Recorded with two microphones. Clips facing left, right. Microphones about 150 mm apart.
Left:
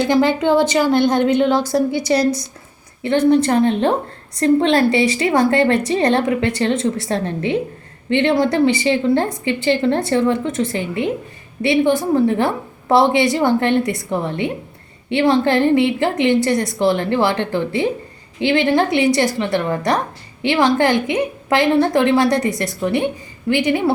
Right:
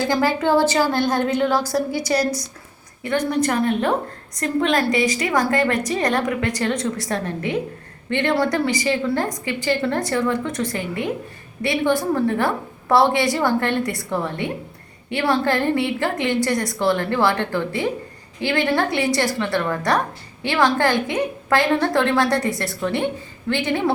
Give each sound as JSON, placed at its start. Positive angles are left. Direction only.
{"t": 0.0, "sound": "a woman's voice", "side_deg": 20}